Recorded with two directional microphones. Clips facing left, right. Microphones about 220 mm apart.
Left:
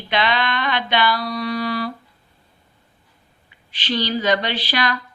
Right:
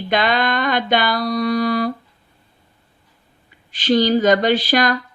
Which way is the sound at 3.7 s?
45° right (ahead or behind).